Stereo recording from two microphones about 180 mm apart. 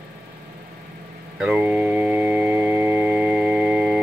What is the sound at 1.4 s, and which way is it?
Organ, 5° right (ahead or behind).